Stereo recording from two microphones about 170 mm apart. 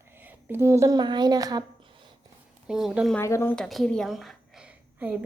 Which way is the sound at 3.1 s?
15° left (ahead or behind).